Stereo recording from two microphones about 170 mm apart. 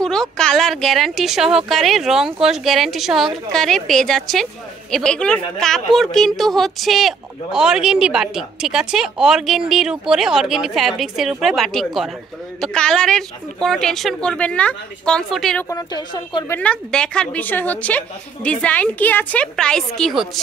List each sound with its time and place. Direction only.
0.0 s speech: 5° left (ahead or behind)
15.7 s speech: 25° left (ahead or behind)
16.5 s a woman's voice: 5° left (ahead or behind)